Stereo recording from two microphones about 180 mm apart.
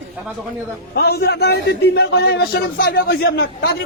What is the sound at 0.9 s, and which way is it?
A man's voice, 60° left (ahead or behind).